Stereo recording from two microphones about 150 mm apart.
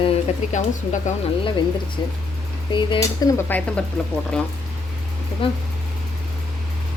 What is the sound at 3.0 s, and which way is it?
Speech, 20° left (ahead or behind).